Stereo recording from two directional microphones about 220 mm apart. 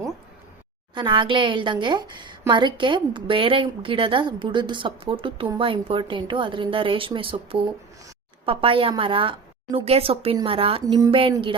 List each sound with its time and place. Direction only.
0.9 s a woman's voice: 20° right (ahead or behind)